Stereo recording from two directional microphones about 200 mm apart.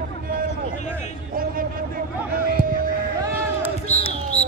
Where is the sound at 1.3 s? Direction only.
45° right (ahead or behind).